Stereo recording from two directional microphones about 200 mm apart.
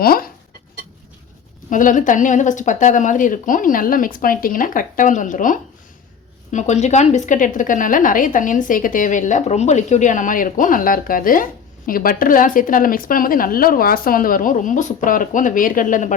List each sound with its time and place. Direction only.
0.0 s speech: 45° left (ahead or behind)
1.7 s a woman's voice: 40° left (ahead or behind)